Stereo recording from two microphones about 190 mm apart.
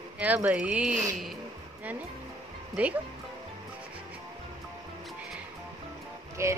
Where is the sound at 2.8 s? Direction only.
5° right (ahead or behind).